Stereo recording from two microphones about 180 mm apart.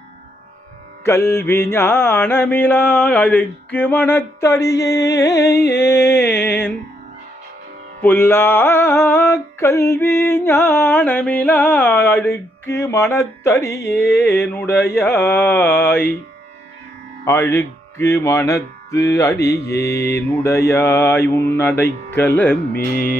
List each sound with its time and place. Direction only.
1.0 s music: 15° left (ahead or behind)
5.5 s carnatic music: 65° left (ahead or behind)
5.8 s music: 15° left (ahead or behind)
8.0 s music: 10° left (ahead or behind)
17.2 s speech: 15° left (ahead or behind)
19.0 s music: 15° left (ahead or behind)
22.7 s carnatic music: 55° left (ahead or behind)